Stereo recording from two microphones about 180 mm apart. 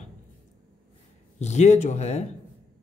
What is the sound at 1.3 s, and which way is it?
Speech, 40° left (ahead or behind).